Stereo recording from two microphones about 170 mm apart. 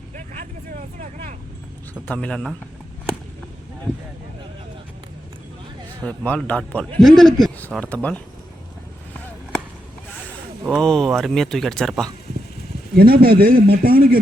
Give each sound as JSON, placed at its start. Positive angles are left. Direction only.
{"t": 0.3, "sound": "vehicle", "side_deg": -45}
{"t": 1.9, "sound": "speech", "side_deg": 10}
{"t": 6.0, "sound": "a man's voice", "side_deg": 5}
{"t": 10.7, "sound": "speech", "side_deg": 5}
{"t": 13.0, "sound": "speech", "side_deg": -60}